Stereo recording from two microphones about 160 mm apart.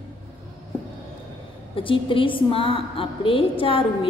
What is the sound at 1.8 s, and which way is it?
A woman's voice, 35° left (ahead or behind).